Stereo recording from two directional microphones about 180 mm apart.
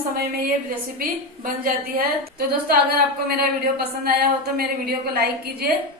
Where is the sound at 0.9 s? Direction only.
55° right (ahead or behind).